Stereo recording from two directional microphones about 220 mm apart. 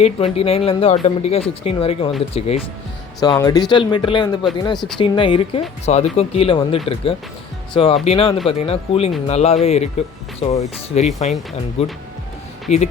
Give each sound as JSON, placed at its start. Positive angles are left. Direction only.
{"t": 0.0, "sound": "speech", "side_deg": 25}
{"t": 3.2, "sound": "speech", "side_deg": 15}